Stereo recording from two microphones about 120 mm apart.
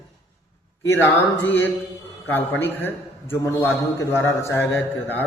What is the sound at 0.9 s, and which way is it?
A man's voice, 20° left (ahead or behind).